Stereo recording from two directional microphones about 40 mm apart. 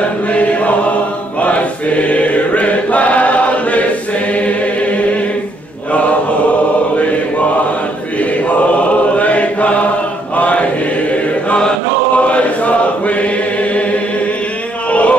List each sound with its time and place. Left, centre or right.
0.3 s chant: left
1.4 s choir: left
8.2 s chant: left
12.2 s chant: left
14.9 s a sound: left